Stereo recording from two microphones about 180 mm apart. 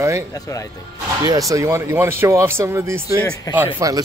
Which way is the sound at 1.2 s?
20° right (ahead or behind).